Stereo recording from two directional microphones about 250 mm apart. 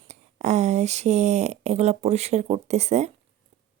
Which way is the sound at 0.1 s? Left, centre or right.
Right.